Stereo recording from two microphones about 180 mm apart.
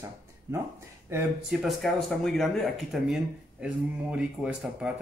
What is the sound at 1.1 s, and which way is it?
Speech, 15° right (ahead or behind).